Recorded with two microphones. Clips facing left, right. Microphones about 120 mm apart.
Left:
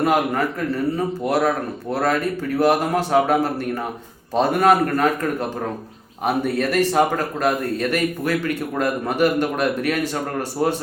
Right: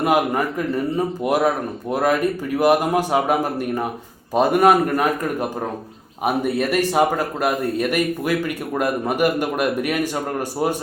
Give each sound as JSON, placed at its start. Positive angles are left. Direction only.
{"t": 0.0, "sound": "speech", "side_deg": -10}